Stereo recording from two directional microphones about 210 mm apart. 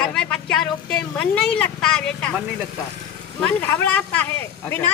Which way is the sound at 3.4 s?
10° left (ahead or behind).